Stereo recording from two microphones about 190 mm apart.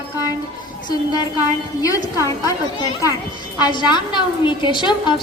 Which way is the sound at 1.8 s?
15° left (ahead or behind).